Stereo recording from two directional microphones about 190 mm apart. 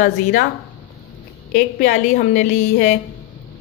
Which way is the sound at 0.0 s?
50° left (ahead or behind).